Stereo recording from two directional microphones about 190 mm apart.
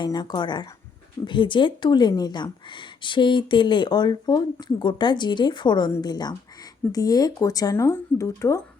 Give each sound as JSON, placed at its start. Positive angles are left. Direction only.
{"t": 0.0, "sound": "speech", "side_deg": 20}